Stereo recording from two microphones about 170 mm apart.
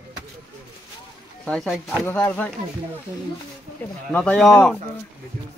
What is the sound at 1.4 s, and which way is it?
A man's voice, 5° left (ahead or behind).